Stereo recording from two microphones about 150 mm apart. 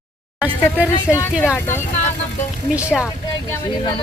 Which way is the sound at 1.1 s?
15° left (ahead or behind).